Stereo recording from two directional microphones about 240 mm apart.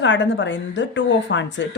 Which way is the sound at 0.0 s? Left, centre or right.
Left.